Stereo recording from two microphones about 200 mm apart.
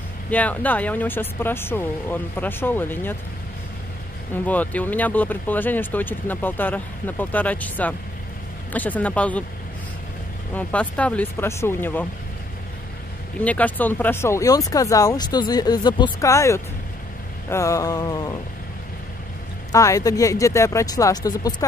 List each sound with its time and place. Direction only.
0.3 s speech: 10° left (ahead or behind)
4.5 s speech: 10° left (ahead or behind)
10.5 s speech: 5° left (ahead or behind)
13.4 s speech: 5° left (ahead or behind)
19.7 s speech: 15° left (ahead or behind)